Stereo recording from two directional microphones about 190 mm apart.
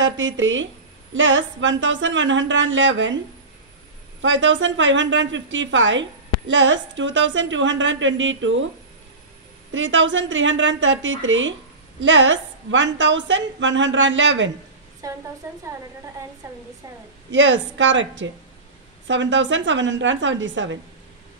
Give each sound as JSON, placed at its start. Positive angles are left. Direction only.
{"t": 0.0, "sound": "a woman's voice", "side_deg": -80}
{"t": 4.2, "sound": "a woman's voice", "side_deg": -85}
{"t": 9.7, "sound": "a woman's voice", "side_deg": -80}
{"t": 15.0, "sound": "speech", "side_deg": -15}
{"t": 17.3, "sound": "a woman's voice", "side_deg": -75}